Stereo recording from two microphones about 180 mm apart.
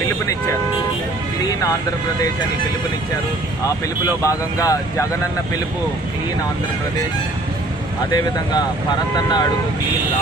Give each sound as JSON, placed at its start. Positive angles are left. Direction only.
{"t": 4.3, "sound": "speech", "side_deg": 20}